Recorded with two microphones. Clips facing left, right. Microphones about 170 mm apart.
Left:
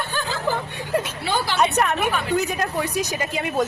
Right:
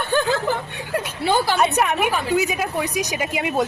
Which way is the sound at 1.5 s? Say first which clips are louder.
Right 1 dB; 10° right (ahead or behind).